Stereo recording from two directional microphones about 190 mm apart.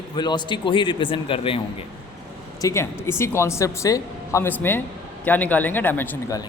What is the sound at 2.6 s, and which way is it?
A man's voice, 15° left (ahead or behind).